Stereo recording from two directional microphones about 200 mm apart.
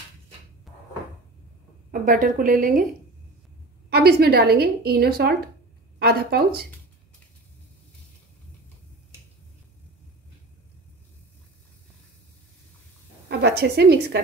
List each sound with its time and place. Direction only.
0.7 s cupboard open or close: centre (ahead or behind)
1.9 s a woman's voice: 45° right (ahead or behind)
3.9 s a woman's voice: 50° right (ahead or behind)
13.3 s a woman's voice: 55° right (ahead or behind)